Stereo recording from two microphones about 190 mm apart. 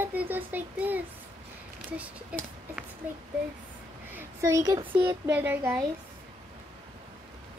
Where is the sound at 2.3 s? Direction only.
5° right (ahead or behind).